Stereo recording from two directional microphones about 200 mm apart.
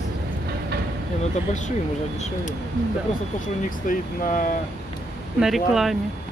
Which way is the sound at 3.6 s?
40° left (ahead or behind).